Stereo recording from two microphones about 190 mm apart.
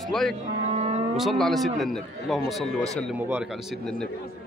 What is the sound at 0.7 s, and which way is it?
Vehicle, 35° right (ahead or behind).